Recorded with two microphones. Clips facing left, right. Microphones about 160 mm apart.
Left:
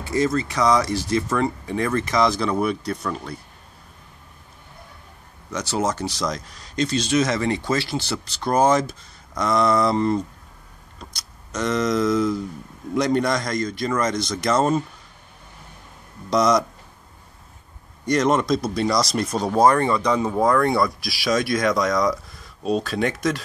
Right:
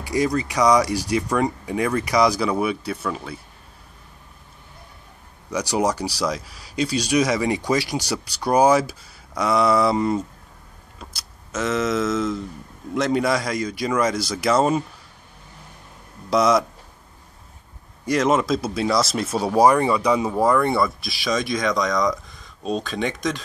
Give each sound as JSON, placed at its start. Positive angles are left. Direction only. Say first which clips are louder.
{"t": 0.0, "sound": "speech", "louder": "even", "side_deg": -15}
{"t": 5.5, "sound": "speech", "louder": "right 2 dB", "side_deg": -10}
{"t": 11.5, "sound": "speech", "louder": "left 1 dB", "side_deg": -5}
{"t": 16.3, "sound": "speech", "louder": "right 1 dB", "side_deg": -5}
{"t": 18.0, "sound": "speech", "louder": "even", "side_deg": -5}